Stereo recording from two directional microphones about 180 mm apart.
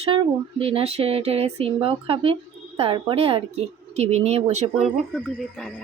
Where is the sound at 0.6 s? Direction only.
35° right (ahead or behind).